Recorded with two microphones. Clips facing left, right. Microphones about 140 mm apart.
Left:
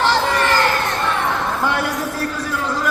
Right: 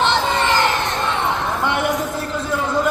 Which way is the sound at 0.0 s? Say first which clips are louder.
Left 1 dB; 20° right (ahead or behind).